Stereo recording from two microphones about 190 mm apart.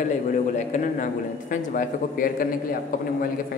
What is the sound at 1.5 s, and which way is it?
Speech, 45° left (ahead or behind).